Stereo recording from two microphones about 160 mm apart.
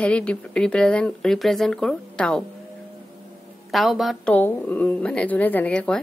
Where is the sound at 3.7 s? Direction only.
Centre (ahead or behind).